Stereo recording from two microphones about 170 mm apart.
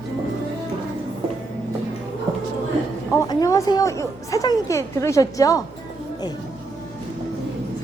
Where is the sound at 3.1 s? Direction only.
20° left (ahead or behind).